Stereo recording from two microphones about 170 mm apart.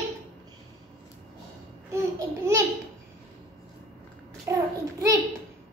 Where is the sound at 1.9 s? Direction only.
15° right (ahead or behind).